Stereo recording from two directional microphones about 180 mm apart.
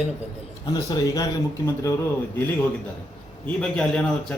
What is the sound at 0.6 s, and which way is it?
A man's voice, 20° left (ahead or behind).